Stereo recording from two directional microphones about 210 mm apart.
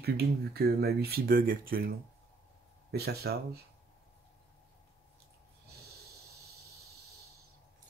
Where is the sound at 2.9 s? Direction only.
50° right (ahead or behind).